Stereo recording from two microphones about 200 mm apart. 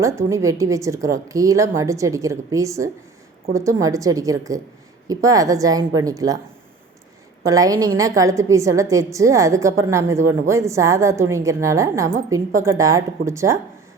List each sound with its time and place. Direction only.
0.0 s a woman's voice: 15° right (ahead or behind)
7.4 s a woman's voice: 15° right (ahead or behind)